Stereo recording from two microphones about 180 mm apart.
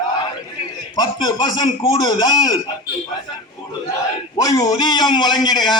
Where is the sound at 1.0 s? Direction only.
20° left (ahead or behind).